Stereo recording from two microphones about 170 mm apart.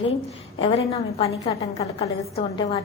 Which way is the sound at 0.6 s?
35° left (ahead or behind).